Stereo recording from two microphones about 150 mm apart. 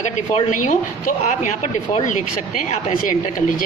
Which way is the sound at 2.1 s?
55° left (ahead or behind).